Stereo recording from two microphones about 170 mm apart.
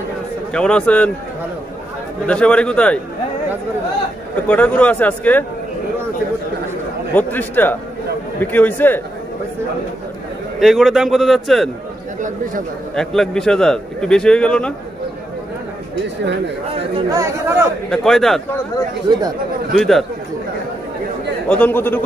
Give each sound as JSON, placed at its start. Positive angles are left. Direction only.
{"t": 0.5, "sound": "a man's voice", "side_deg": 5}
{"t": 2.2, "sound": "speech", "side_deg": 5}
{"t": 4.5, "sound": "speech", "side_deg": 10}
{"t": 7.2, "sound": "speech", "side_deg": 10}
{"t": 10.6, "sound": "a man's voice", "side_deg": 0}
{"t": 12.9, "sound": "a man's voice", "side_deg": 5}
{"t": 17.1, "sound": "speech", "side_deg": -15}
{"t": 17.8, "sound": "a man's voice", "side_deg": 0}
{"t": 19.7, "sound": "a man's voice", "side_deg": 0}
{"t": 21.5, "sound": "speech", "side_deg": 10}